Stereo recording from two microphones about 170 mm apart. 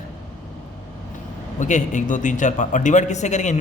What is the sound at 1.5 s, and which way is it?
A man's voice, 45° left (ahead or behind).